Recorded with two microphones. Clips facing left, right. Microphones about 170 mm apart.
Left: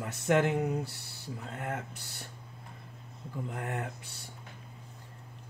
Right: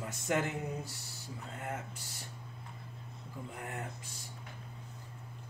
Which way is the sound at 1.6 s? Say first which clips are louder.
Left 3 dB; 65° left (ahead or behind).